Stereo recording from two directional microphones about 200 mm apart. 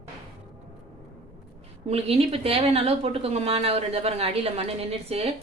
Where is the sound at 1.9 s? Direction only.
30° right (ahead or behind).